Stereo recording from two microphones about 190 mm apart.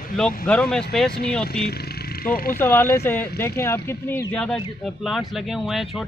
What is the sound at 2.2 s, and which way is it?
Speech, 50° left (ahead or behind).